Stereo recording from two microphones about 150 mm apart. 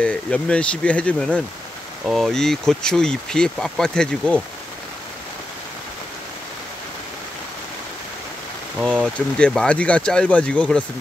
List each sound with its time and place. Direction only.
0.0 s speech: 5° left (ahead or behind)
9.4 s speech: 5° left (ahead or behind)